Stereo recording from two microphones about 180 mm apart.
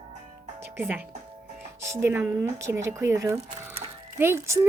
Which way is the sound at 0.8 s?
10° right (ahead or behind).